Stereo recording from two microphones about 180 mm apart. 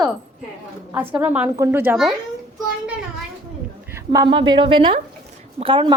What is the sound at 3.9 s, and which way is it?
A child's voice, 15° right (ahead or behind).